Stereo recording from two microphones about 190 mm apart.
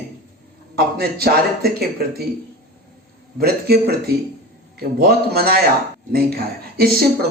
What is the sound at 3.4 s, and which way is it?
Speech, 55° right (ahead or behind).